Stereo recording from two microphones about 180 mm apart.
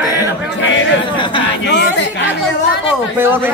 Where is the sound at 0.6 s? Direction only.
90° left.